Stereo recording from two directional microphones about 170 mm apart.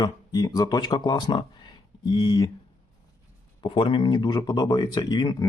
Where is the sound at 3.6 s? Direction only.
30° left (ahead or behind).